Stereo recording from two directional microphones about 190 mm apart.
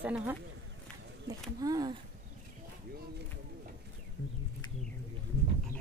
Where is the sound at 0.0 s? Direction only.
5° right (ahead or behind).